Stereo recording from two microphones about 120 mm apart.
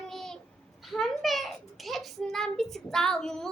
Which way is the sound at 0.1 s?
Centre (ahead or behind).